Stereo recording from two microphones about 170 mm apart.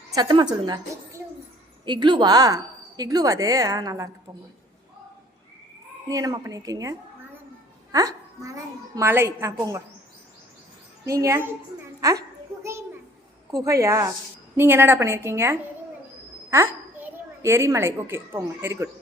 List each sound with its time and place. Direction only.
0.1 s a woman's voice: 25° right (ahead or behind)
1.8 s a woman's voice: 25° right (ahead or behind)
6.1 s a woman's voice: 20° right (ahead or behind)
7.9 s a child's voice: 20° right (ahead or behind)
11.0 s a child's voice: 20° right (ahead or behind)
13.5 s a woman's voice: 20° right (ahead or behind)